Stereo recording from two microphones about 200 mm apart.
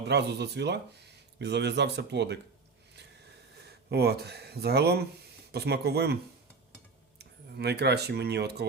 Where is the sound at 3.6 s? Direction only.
55° right (ahead or behind).